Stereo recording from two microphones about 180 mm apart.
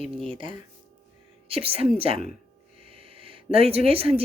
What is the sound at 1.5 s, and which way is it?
Speech, 30° right (ahead or behind).